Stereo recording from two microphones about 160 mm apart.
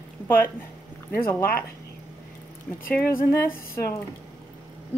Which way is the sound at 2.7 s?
10° left (ahead or behind).